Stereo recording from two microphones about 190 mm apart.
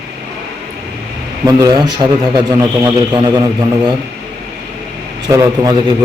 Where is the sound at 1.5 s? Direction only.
20° right (ahead or behind).